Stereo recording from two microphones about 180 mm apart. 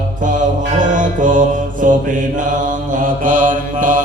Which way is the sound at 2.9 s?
45° right (ahead or behind).